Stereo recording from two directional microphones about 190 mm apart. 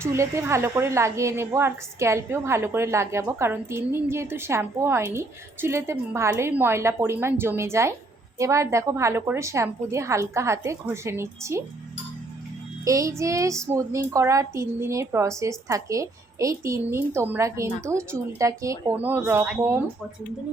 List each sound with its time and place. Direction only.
0.0 s a woman's voice: 15° right (ahead or behind)
12.8 s a woman's voice: 15° right (ahead or behind)